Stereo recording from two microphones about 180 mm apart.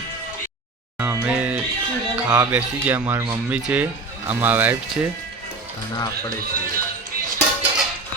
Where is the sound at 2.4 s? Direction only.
10° right (ahead or behind).